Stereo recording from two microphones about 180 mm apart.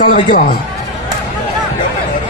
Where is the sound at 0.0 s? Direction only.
45° left (ahead or behind).